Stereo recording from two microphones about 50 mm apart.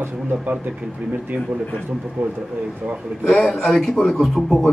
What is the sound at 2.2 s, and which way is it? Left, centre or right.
Speech, right.